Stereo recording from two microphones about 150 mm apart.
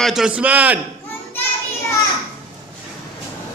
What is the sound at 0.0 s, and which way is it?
Speech, 5° right (ahead or behind).